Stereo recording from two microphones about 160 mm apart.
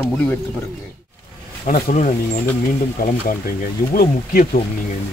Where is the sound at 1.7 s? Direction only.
60° left (ahead or behind).